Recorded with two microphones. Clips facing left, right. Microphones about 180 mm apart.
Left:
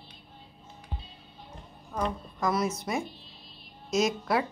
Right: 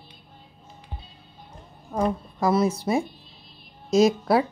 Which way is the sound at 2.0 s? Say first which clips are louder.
Right 6 dB; 30° right (ahead or behind).